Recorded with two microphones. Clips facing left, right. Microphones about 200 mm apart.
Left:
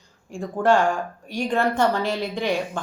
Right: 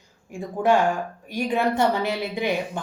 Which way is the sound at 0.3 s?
5° right (ahead or behind).